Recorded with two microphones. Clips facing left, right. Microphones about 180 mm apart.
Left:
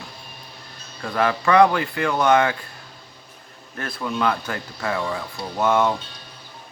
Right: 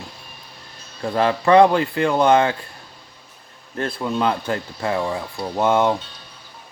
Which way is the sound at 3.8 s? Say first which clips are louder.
Right 3 dB; 30° right (ahead or behind).